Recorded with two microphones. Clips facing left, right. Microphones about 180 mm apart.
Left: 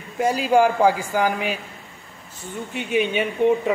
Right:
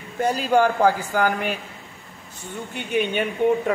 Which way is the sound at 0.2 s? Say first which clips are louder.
Left 2 dB; 5° left (ahead or behind).